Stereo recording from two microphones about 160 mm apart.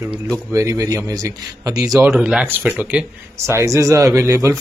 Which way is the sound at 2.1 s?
5° right (ahead or behind).